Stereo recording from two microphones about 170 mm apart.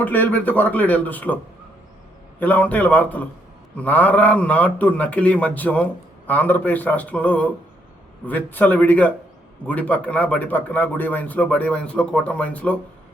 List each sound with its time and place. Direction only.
0.0 s a man's voice: 10° left (ahead or behind)
2.4 s a man's voice: 10° left (ahead or behind)